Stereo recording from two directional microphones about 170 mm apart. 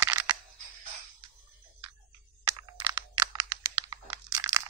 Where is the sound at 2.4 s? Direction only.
20° right (ahead or behind).